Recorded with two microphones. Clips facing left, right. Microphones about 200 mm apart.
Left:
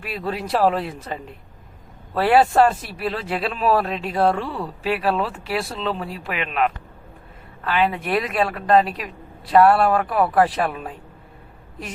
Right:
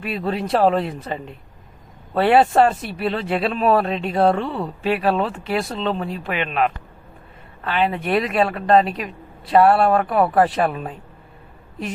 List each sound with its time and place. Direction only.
0.0 s speech: centre (ahead or behind)
4.4 s speech: 25° right (ahead or behind)
4.8 s speech: centre (ahead or behind)